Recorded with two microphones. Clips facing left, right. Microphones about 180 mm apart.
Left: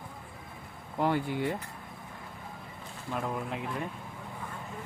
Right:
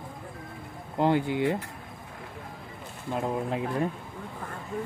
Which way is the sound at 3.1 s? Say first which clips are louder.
Right 5 dB; 25° right (ahead or behind).